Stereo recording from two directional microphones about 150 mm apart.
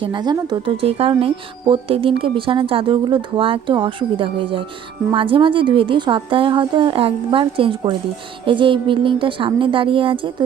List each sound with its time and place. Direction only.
0.0 s a woman's voice: 30° right (ahead or behind)